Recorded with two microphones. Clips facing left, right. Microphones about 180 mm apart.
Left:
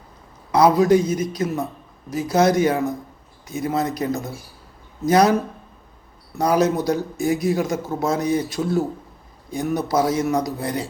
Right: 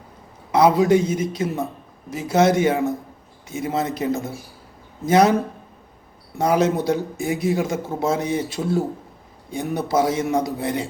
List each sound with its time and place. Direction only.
0.5 s a man's voice: 25° right (ahead or behind)
6.4 s a man's voice: 25° right (ahead or behind)